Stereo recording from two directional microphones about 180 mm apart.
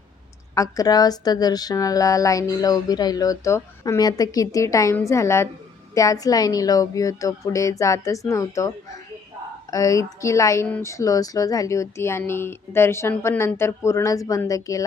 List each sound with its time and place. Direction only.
0.5 s speech: 20° left (ahead or behind)